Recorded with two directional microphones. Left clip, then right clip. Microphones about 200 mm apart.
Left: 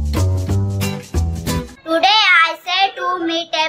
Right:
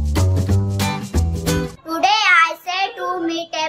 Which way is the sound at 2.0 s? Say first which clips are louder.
Left 1 dB; 5° right (ahead or behind).